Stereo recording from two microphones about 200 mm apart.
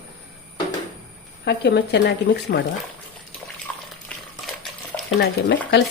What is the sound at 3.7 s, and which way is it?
Water, 5° left (ahead or behind).